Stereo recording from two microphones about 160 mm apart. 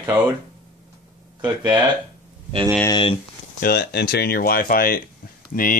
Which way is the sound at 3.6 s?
90° left.